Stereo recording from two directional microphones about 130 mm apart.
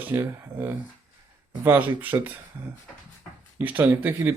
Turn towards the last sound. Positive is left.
turn(degrees=-15)  # may be behind; listen again after turning